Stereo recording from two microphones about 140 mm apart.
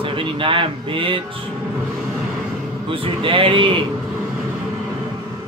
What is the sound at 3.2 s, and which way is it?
Speech, 40° right (ahead or behind).